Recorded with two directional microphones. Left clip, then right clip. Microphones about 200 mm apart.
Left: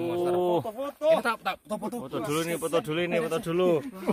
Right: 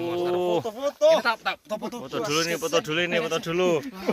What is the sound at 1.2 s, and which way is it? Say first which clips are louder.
Speech: right 3 dB; 50° left (ahead or behind).